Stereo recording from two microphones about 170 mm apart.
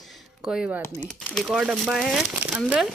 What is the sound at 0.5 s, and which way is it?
Speech, 10° right (ahead or behind).